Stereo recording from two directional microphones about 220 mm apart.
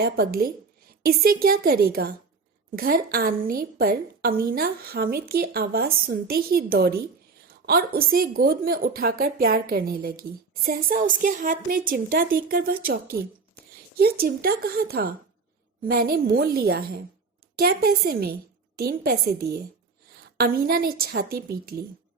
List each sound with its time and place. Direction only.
0.0 s a woman's voice: 45° right (ahead or behind)
14.0 s a woman's voice: 45° right (ahead or behind)